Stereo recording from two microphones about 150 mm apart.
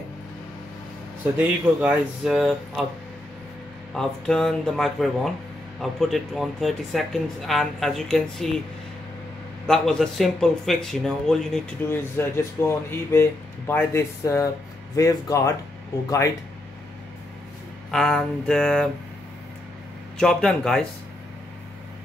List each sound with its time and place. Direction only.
1.4 s speech: 10° right (ahead or behind)
3.9 s speech: 5° left (ahead or behind)
9.7 s speech: 5° left (ahead or behind)
11.9 s speech: 15° left (ahead or behind)
17.9 s speech: 5° left (ahead or behind)
20.2 s speech: 5° left (ahead or behind)